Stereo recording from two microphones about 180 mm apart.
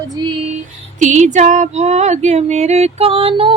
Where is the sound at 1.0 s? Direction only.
40° right (ahead or behind).